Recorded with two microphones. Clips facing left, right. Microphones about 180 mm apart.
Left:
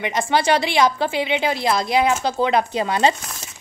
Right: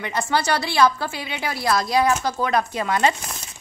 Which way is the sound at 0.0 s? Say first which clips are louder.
Left 3 dB; 20° left (ahead or behind).